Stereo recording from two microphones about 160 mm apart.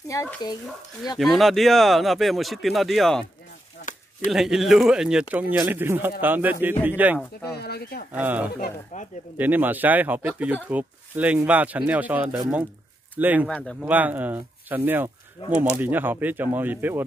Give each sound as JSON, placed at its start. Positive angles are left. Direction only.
{"t": 0.1, "sound": "speech", "side_deg": 20}
{"t": 1.1, "sound": "speech", "side_deg": 0}
{"t": 4.3, "sound": "speech", "side_deg": 0}
{"t": 7.5, "sound": "speech", "side_deg": 80}
{"t": 8.1, "sound": "speech", "side_deg": -10}
{"t": 8.9, "sound": "speech", "side_deg": 50}
{"t": 9.4, "sound": "speech", "side_deg": -10}
{"t": 13.5, "sound": "speech", "side_deg": 5}
{"t": 13.7, "sound": "speech", "side_deg": -10}
{"t": 15.4, "sound": "speech", "side_deg": 35}
{"t": 15.7, "sound": "speech", "side_deg": -10}